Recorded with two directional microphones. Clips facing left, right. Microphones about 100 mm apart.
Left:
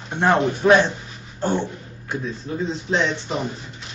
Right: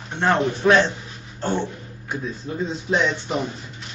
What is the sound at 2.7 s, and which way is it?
Speech, 10° right (ahead or behind).